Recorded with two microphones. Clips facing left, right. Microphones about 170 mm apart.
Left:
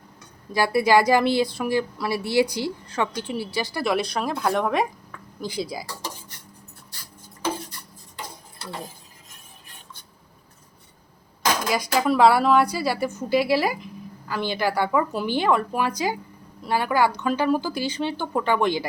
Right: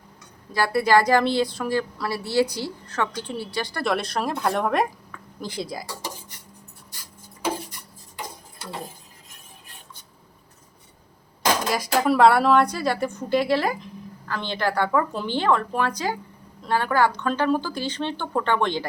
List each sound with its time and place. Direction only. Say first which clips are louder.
0.5 s a woman's voice: left 1 dB; 10° left (ahead or behind)
11.7 s a woman's voice: left 1 dB; centre (ahead or behind)